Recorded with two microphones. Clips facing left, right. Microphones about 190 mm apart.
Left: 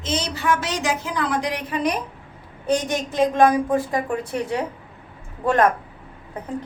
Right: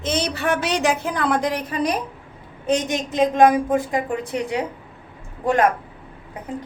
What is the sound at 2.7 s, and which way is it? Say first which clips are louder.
A woman's voice: right 1 dB; 20° right (ahead or behind).